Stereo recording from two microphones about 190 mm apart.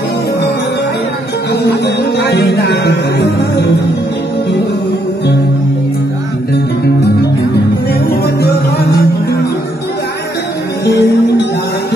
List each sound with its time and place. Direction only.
1.5 s music: 60° left (ahead or behind)
8.4 s music: 60° left (ahead or behind)
10.9 s music: 65° left (ahead or behind)